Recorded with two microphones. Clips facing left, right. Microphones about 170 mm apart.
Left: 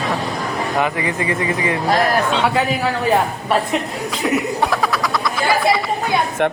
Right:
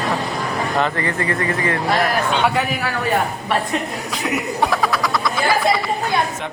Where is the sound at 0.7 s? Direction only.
15° left (ahead or behind).